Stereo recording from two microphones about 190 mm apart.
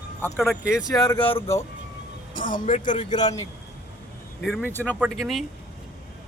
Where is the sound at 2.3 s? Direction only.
45° left (ahead or behind).